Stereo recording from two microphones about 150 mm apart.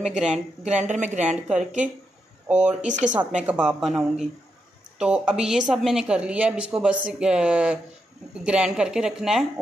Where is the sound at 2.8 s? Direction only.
55° right (ahead or behind).